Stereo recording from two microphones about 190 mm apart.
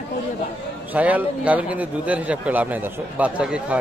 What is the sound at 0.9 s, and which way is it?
A man's voice, 10° right (ahead or behind).